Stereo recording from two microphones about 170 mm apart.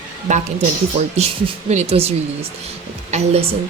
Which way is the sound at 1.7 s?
35° right (ahead or behind).